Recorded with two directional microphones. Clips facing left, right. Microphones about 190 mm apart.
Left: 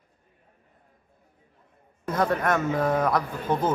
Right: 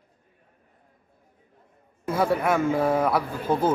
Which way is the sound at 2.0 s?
10° right (ahead or behind).